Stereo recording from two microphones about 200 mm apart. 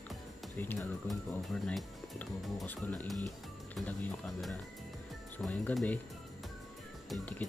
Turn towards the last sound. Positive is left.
turn(degrees=0)  # may be behind; listen again after turning